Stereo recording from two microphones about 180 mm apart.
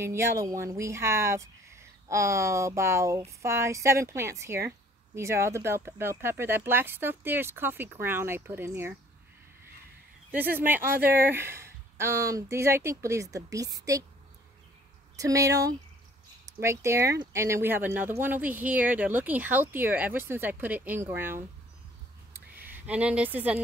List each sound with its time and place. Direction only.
0.0 s a woman's voice: 15° right (ahead or behind)
10.3 s a woman's voice: 10° right (ahead or behind)
15.1 s a woman's voice: 20° right (ahead or behind)
22.3 s a sound: 10° right (ahead or behind)